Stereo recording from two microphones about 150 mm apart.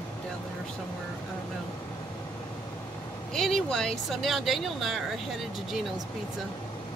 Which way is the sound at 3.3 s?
5° left (ahead or behind).